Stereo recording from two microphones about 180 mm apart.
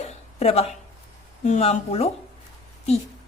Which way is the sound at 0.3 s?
35° left (ahead or behind).